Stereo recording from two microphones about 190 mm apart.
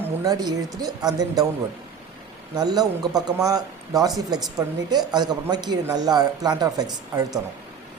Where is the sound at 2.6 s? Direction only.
20° right (ahead or behind).